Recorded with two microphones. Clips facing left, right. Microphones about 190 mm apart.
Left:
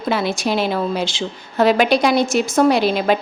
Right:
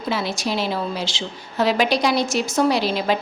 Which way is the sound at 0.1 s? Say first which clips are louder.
Left 5 dB; 55° left (ahead or behind).